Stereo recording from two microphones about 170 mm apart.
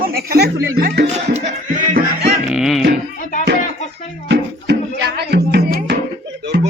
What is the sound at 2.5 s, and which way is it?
Music, centre (ahead or behind).